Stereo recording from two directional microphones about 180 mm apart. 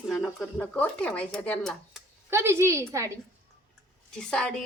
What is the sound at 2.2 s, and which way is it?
Speech, 15° right (ahead or behind).